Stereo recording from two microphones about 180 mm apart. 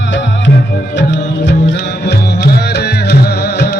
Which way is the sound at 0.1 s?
80° left.